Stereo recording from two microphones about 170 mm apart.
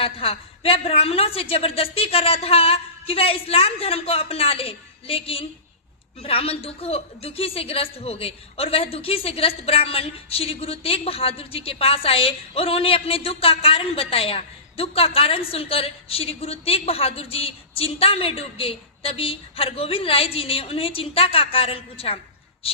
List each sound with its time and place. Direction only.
0.0 s a woman's voice: 35° left (ahead or behind)